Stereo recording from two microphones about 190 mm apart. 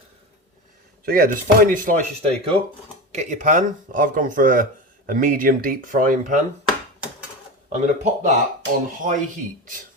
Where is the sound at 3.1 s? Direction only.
40° right (ahead or behind).